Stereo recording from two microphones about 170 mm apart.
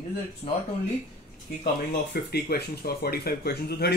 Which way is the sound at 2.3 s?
65° left (ahead or behind).